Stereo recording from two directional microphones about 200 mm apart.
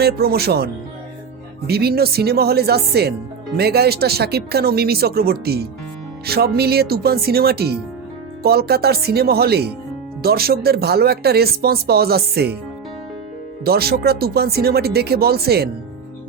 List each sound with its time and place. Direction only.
0.0 s speech: 50° right (ahead or behind)
13.7 s speech: 50° right (ahead or behind)